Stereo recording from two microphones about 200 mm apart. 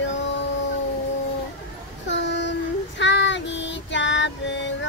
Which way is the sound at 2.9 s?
65° left (ahead or behind).